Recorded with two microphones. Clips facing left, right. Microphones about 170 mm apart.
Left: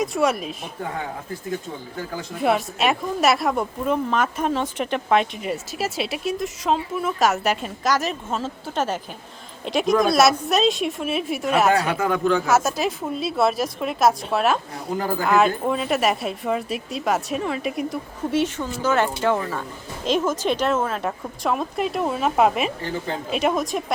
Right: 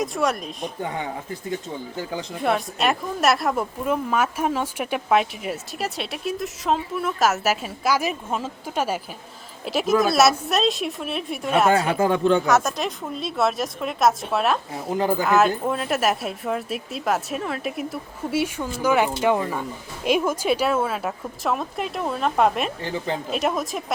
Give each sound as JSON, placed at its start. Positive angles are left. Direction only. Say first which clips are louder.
{"t": 0.0, "sound": "speech", "louder": "left 2 dB", "side_deg": 0}
{"t": 2.4, "sound": "speech", "louder": "left 2 dB", "side_deg": 0}
{"t": 11.7, "sound": "speech", "louder": "right 1 dB", "side_deg": -25}
{"t": 12.5, "sound": "speech", "louder": "left 1 dB", "side_deg": 5}